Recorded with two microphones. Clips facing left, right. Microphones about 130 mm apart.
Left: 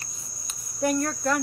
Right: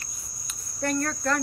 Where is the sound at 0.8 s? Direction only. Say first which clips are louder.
Left 3 dB; 10° left (ahead or behind).